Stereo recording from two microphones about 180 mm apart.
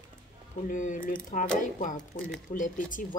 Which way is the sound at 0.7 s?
45° left (ahead or behind).